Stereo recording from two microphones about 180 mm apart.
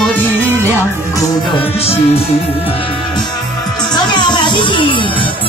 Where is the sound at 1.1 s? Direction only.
30° left (ahead or behind).